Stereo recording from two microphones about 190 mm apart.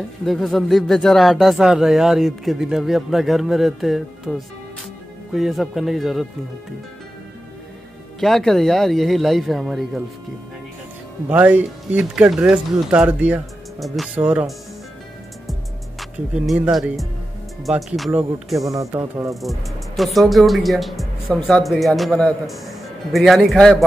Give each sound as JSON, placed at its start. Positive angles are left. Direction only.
{"t": 0.2, "sound": "speech", "side_deg": 0}
{"t": 8.2, "sound": "speech", "side_deg": 0}
{"t": 11.2, "sound": "speech", "side_deg": -10}
{"t": 16.0, "sound": "speech", "side_deg": 0}
{"t": 18.6, "sound": "speech", "side_deg": -15}
{"t": 20.0, "sound": "speech", "side_deg": 0}